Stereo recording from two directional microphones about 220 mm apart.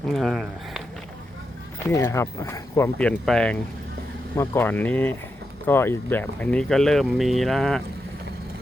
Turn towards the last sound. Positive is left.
turn(degrees=0)  # may be behind; listen again after turning